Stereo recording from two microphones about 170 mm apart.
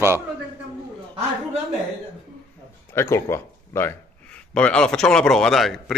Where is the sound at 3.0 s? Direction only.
15° left (ahead or behind).